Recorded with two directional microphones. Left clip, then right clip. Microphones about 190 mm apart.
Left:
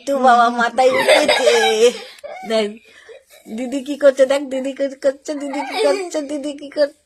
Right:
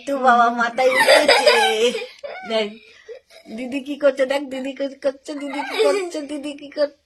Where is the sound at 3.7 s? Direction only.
35° left (ahead or behind).